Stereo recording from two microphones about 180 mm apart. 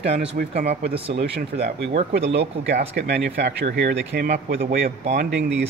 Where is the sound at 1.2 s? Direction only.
55° right (ahead or behind).